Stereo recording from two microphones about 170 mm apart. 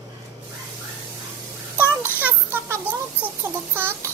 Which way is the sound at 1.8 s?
10° right (ahead or behind).